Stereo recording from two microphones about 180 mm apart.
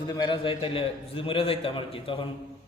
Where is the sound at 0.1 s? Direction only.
25° left (ahead or behind).